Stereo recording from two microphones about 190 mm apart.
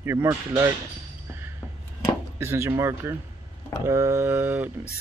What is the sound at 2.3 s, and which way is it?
Speech, 15° right (ahead or behind).